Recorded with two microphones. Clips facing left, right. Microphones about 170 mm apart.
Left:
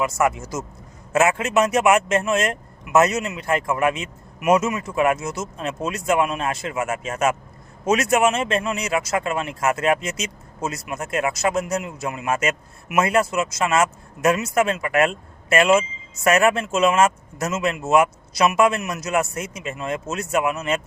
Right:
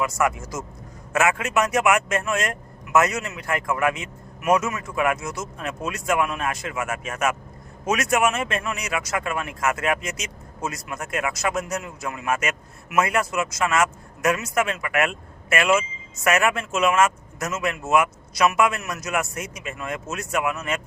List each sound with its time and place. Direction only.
0.0 s speech: 25° left (ahead or behind)